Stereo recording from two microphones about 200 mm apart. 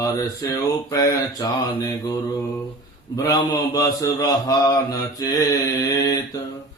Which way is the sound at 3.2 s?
20° left (ahead or behind).